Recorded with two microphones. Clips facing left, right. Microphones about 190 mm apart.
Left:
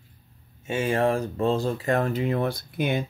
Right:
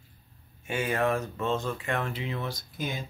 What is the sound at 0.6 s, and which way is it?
Speech, 25° left (ahead or behind).